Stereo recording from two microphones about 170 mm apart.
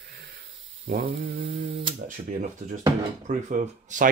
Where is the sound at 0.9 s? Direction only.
55° right (ahead or behind).